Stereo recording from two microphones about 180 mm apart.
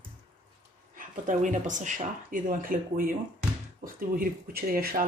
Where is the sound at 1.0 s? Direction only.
45° right (ahead or behind).